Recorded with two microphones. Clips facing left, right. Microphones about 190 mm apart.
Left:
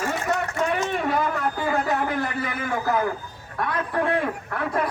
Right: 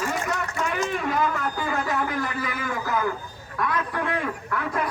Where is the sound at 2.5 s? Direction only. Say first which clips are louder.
Left 3 dB; 35° left (ahead or behind).